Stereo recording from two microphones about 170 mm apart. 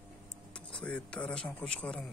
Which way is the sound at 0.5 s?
5° left (ahead or behind).